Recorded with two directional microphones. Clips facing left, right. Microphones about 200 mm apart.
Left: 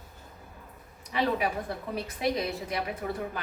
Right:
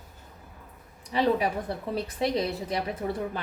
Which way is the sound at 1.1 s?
30° right (ahead or behind).